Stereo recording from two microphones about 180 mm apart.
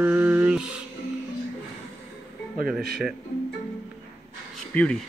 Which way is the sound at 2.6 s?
Centre (ahead or behind).